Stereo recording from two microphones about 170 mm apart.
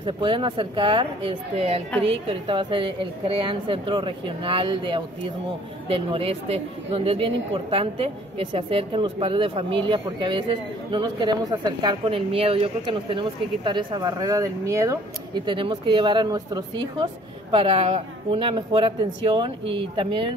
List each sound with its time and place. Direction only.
0.0 s a woman's voice: 30° right (ahead or behind)